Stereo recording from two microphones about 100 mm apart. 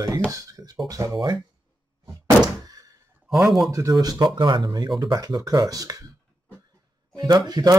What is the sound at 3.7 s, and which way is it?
Speech, 35° right (ahead or behind).